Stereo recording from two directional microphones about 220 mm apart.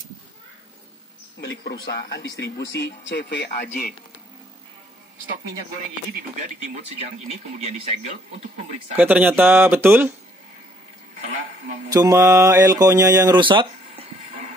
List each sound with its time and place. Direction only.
1.4 s speech: 50° left (ahead or behind)
8.9 s speech: 5° right (ahead or behind)
11.9 s speech: 15° right (ahead or behind)